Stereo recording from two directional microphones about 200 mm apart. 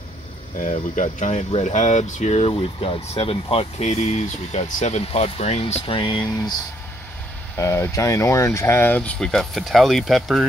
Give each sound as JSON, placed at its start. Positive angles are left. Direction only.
{"t": 0.6, "sound": "speech", "side_deg": 40}
{"t": 7.5, "sound": "speech", "side_deg": 15}